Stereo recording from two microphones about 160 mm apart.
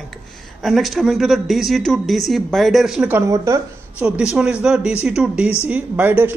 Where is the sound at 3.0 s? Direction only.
15° right (ahead or behind).